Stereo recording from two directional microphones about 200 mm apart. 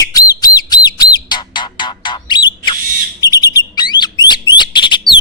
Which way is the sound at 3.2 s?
20° left (ahead or behind).